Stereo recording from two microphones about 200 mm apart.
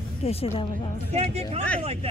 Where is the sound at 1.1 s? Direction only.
30° right (ahead or behind).